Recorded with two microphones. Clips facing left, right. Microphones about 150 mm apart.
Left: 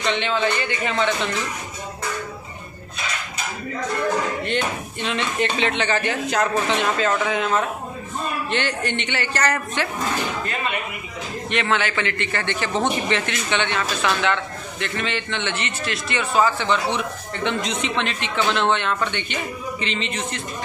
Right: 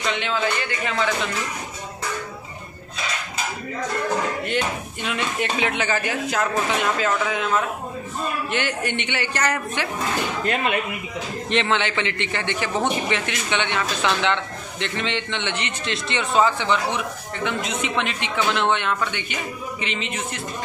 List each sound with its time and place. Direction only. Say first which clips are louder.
0.1 s a man's voice: left 3 dB; 5° right (ahead or behind)
4.5 s a man's voice: even; 10° right (ahead or behind)
11.6 s a man's voice: even; 20° right (ahead or behind)
16.9 s a man's voice: left 1 dB; 10° right (ahead or behind)